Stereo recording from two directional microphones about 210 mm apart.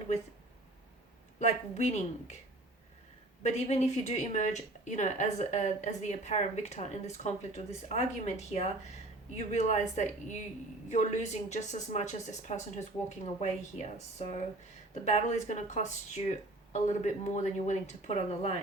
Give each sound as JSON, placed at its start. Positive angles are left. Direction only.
{"t": 1.4, "sound": "speech", "side_deg": 30}
{"t": 3.4, "sound": "speech", "side_deg": 30}